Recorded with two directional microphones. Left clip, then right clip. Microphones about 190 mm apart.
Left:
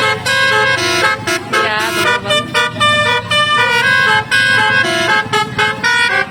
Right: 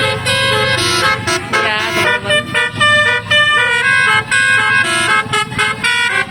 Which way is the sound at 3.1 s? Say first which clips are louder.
Right 1 dB; 45° left (ahead or behind).